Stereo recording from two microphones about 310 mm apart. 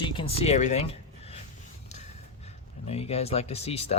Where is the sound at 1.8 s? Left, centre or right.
Left.